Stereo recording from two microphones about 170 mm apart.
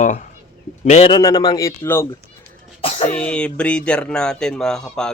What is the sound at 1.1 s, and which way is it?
Speech, 25° left (ahead or behind).